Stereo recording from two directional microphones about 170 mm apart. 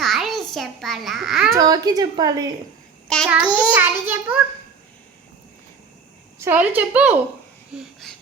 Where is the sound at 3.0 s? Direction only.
5° left (ahead or behind).